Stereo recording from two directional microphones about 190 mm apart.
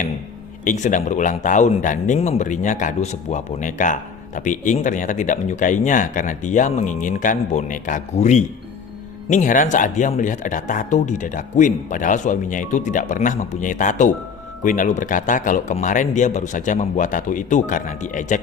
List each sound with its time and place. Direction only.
0.6 s a man's voice: 40° left (ahead or behind)